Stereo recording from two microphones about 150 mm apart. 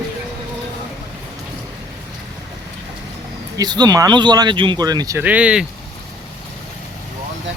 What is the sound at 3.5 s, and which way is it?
Speech, 25° right (ahead or behind).